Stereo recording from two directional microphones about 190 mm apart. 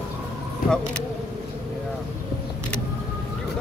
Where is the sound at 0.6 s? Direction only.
50° left (ahead or behind).